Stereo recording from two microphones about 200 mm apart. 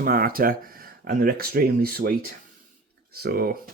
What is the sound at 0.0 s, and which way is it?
Speech, 45° right (ahead or behind).